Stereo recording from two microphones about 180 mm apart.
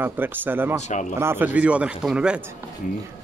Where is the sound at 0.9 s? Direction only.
45° left (ahead or behind).